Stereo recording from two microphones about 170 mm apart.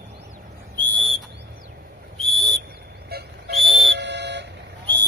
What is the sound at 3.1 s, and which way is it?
Whistle, 70° right (ahead or behind).